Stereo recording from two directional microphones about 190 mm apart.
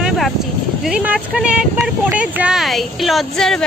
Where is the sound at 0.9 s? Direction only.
5° right (ahead or behind).